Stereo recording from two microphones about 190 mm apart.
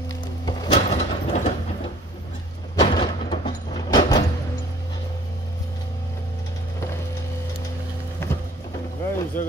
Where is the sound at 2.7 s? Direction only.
30° left (ahead or behind).